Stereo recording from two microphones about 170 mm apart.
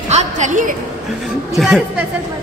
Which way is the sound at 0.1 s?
45° right (ahead or behind).